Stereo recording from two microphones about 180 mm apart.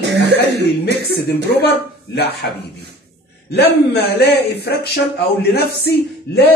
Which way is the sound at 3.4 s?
65° left (ahead or behind).